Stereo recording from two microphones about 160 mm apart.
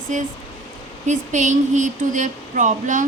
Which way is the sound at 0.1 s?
50° right (ahead or behind).